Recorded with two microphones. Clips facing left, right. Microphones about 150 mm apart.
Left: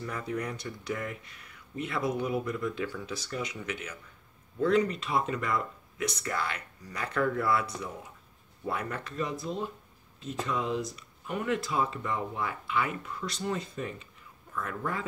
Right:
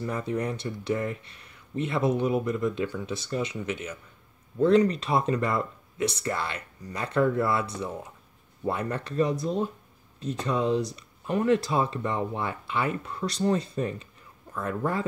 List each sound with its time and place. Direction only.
0.0 s speech: 25° right (ahead or behind)
8.6 s speech: 30° right (ahead or behind)